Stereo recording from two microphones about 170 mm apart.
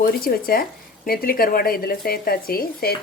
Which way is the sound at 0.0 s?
60° left (ahead or behind).